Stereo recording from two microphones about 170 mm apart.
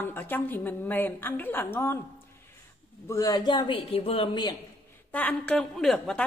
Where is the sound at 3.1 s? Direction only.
20° left (ahead or behind).